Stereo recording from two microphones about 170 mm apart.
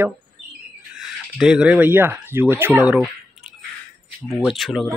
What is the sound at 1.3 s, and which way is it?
Speech, 5° right (ahead or behind).